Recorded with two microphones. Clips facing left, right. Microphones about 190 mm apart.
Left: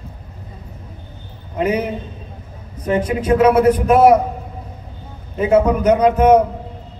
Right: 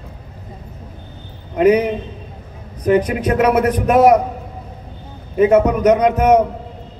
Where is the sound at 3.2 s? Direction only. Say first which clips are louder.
Left 3 dB; 30° left (ahead or behind).